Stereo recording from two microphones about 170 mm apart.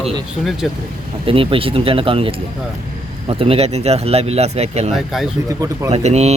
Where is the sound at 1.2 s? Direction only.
35° right (ahead or behind).